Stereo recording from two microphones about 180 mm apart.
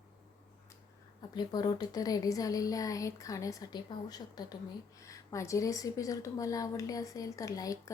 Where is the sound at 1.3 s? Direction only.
25° left (ahead or behind).